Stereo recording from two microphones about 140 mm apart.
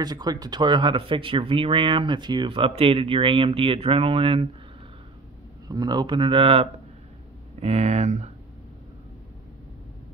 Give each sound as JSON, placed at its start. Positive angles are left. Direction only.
{"t": 0.0, "sound": "speech", "side_deg": -30}
{"t": 5.7, "sound": "speech", "side_deg": -30}